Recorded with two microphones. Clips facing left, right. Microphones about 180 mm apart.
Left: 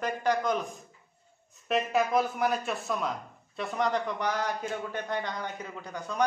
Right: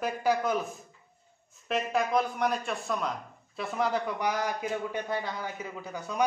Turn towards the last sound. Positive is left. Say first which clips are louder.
# right 1 dB
turn(degrees=-10)  # may be behind; listen again after turning